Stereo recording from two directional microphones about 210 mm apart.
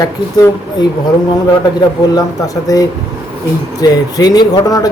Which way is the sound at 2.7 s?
15° left (ahead or behind).